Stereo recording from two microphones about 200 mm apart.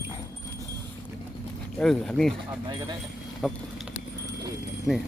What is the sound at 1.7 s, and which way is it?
Speech, 5° left (ahead or behind).